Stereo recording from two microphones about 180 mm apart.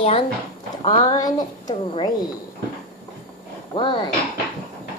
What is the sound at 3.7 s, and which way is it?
Speech, 25° left (ahead or behind).